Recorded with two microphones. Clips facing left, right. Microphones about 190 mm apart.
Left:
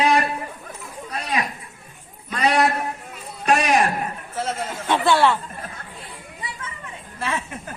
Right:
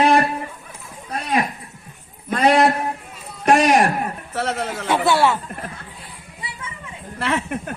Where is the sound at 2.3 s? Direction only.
50° right (ahead or behind).